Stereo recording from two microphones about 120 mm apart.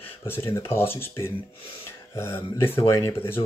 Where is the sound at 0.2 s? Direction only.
20° left (ahead or behind).